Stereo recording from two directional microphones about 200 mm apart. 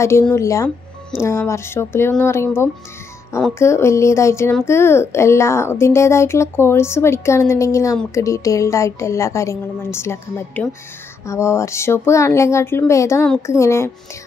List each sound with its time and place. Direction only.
0.0 s speech: 15° left (ahead or behind)